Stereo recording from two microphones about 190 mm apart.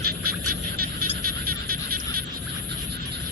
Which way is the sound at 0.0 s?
50° right (ahead or behind).